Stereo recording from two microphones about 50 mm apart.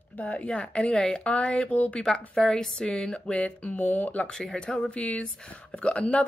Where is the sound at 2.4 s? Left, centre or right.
Centre; by 4.2 s left.